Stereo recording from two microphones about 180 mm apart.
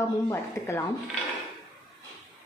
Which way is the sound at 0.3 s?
15° left (ahead or behind).